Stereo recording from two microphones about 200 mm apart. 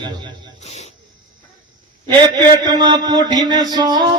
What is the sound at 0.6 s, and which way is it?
Speech, 35° left (ahead or behind).